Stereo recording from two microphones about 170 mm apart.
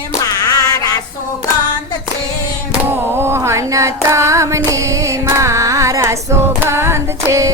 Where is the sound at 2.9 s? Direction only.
15° right (ahead or behind).